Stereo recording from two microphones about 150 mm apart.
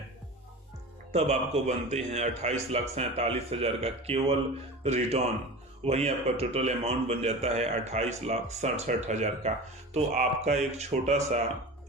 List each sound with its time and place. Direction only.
1.1 s a man's voice: 45° right (ahead or behind)